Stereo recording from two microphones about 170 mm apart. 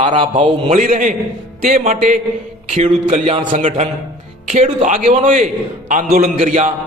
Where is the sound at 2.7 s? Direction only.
35° right (ahead or behind).